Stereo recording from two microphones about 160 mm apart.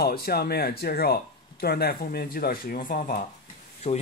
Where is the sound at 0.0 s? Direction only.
75° left (ahead or behind); by 3.3 s 60° left (ahead or behind).